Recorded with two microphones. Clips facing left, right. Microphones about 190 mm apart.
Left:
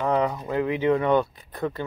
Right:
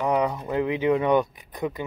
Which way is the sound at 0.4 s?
20° right (ahead or behind).